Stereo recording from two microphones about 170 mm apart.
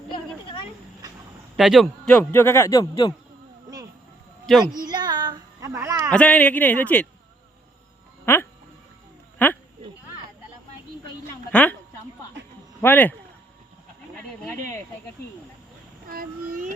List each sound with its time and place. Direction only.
1.5 s a man's voice: centre (ahead or behind); by 3.2 s 25° left (ahead or behind)
4.5 s speech: centre (ahead or behind)
4.9 s a sound: 25° right (ahead or behind)
6.1 s a man's voice: 5° left (ahead or behind)
8.2 s speech: 15° left (ahead or behind)
11.5 s a man's voice: 10° left (ahead or behind)
12.4 s a sound: 90° right
12.8 s a man's voice: 10° left (ahead or behind)
16.0 s child singing: 60° right (ahead or behind)